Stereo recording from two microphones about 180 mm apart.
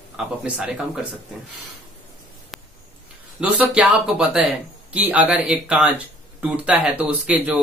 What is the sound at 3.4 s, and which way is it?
Speech, 5° right (ahead or behind).